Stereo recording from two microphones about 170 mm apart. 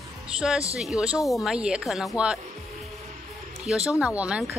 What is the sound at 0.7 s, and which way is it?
Speech, 5° right (ahead or behind).